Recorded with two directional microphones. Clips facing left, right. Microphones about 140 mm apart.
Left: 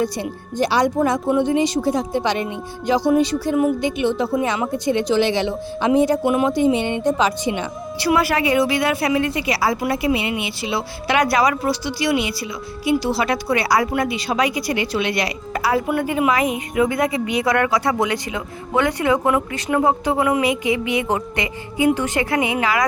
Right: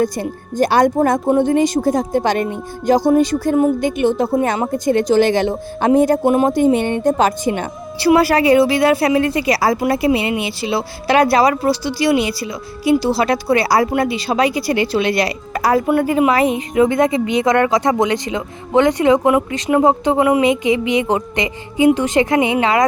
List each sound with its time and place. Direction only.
0.0 s a woman's voice: 45° right (ahead or behind)
7.9 s a woman's voice: 35° right (ahead or behind)